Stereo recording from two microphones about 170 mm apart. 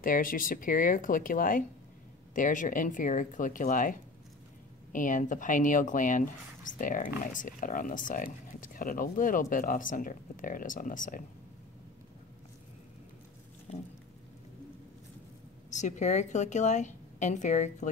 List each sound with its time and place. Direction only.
0.0 s speech: 55° left (ahead or behind)
4.9 s speech: 50° left (ahead or behind)
15.7 s speech: 45° left (ahead or behind)